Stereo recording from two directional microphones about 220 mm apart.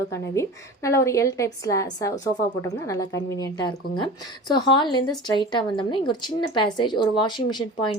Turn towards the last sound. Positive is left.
turn(degrees=20)  # may be behind; listen again after turning